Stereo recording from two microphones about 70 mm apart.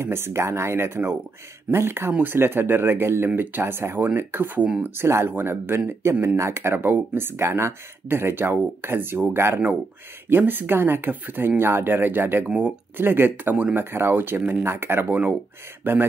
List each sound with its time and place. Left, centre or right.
0.0 s speech: right
4.6 s speech: centre
4.9 s speech: right
12.4 s speech: right